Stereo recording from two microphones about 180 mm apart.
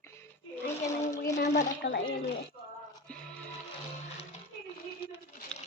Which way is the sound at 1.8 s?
70° left (ahead or behind).